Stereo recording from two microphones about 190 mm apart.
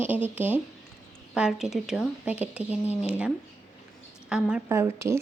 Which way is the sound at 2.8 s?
35° left (ahead or behind).